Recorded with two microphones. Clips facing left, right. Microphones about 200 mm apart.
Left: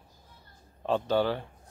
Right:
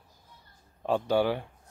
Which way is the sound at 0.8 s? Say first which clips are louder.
Right 1 dB; 10° right (ahead or behind).